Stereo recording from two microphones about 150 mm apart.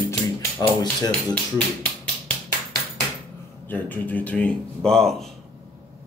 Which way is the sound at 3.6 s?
10° left (ahead or behind).